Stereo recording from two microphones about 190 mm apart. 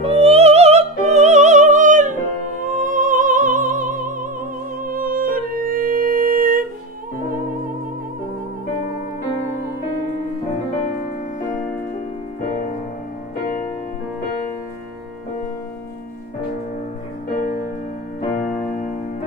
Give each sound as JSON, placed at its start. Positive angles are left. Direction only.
{"t": 0.0, "sound": "music", "side_deg": -30}
{"t": 18.3, "sound": "music", "side_deg": 45}